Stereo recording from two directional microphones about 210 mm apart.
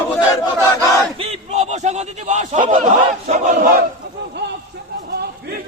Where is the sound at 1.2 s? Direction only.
30° right (ahead or behind).